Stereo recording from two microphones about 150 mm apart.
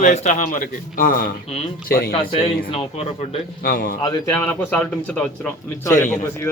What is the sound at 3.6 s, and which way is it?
Speech, 75° left (ahead or behind).